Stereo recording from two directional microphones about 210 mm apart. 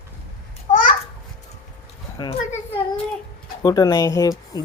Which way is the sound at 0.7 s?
40° left (ahead or behind).